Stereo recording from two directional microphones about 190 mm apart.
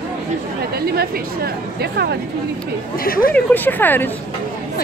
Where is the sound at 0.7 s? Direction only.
55° right (ahead or behind).